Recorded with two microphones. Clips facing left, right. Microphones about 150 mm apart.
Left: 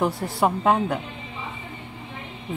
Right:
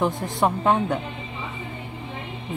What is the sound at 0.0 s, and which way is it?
Speech, 5° left (ahead or behind).